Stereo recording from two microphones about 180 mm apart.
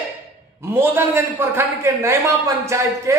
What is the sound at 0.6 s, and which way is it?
A man's voice, 15° right (ahead or behind).